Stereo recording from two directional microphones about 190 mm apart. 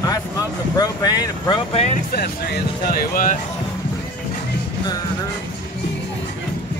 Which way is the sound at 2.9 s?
45° left (ahead or behind).